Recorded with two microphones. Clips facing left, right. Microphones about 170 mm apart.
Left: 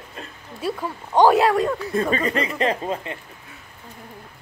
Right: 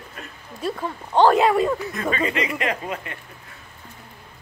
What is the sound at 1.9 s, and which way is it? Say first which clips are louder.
Speech: left 2 dB; 35° left (ahead or behind).